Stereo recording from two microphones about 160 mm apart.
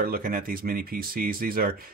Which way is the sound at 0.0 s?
65° right (ahead or behind).